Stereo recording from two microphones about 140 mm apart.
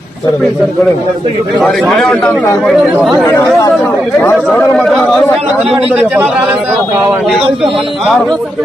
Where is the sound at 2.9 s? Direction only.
5° right (ahead or behind).